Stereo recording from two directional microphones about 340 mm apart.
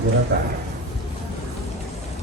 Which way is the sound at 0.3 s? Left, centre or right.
Right.